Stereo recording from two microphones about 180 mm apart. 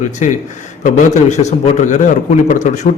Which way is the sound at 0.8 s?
40° left (ahead or behind).